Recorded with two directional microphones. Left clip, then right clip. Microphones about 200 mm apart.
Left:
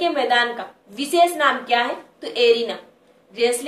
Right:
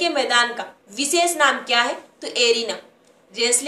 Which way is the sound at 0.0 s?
15° right (ahead or behind).